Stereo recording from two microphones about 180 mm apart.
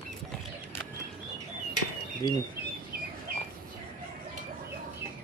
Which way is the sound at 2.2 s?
20° left (ahead or behind).